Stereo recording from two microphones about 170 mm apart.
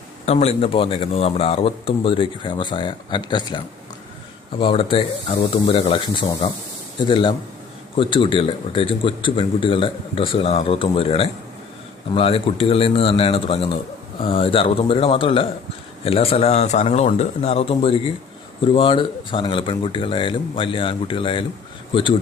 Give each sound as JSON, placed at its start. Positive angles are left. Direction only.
{"t": 0.3, "sound": "speech", "side_deg": 40}
{"t": 4.6, "sound": "a man's voice", "side_deg": 35}